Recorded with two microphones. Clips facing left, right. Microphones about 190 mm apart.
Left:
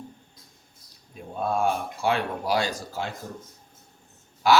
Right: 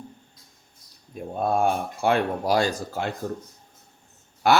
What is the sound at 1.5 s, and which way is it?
Speech, 55° right (ahead or behind).